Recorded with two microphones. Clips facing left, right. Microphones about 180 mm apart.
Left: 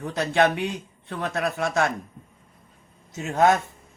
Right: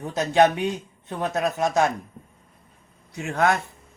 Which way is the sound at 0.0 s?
20° right (ahead or behind).